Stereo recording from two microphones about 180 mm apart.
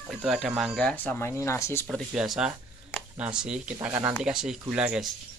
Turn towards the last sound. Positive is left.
turn(degrees=-5)  # may be behind; listen again after turning